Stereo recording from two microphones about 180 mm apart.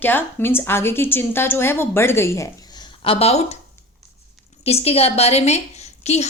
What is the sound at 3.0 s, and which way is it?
Speech, 30° left (ahead or behind).